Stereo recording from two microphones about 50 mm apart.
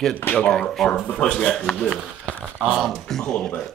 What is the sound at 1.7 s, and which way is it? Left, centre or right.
Speech, left.